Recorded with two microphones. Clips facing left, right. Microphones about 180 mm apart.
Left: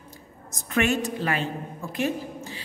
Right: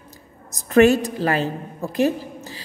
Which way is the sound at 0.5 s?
35° right (ahead or behind).